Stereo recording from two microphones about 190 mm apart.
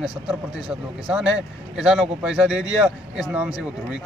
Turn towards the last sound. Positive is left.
turn(degrees=-5)  # may be behind; listen again after turning